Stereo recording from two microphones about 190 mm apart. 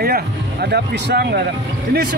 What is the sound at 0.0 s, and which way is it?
Speech, 60° right (ahead or behind).